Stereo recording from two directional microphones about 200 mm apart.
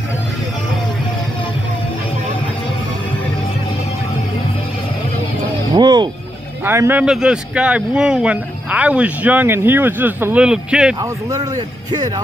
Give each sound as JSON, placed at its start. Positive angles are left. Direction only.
{"t": 5.8, "sound": "music", "side_deg": -20}
{"t": 6.6, "sound": "speech", "side_deg": -10}
{"t": 11.0, "sound": "a man's voice", "side_deg": -15}